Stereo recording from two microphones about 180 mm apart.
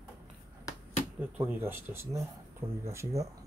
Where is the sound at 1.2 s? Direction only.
10° right (ahead or behind).